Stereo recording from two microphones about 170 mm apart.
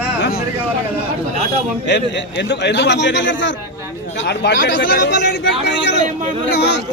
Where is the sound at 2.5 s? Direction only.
90° left.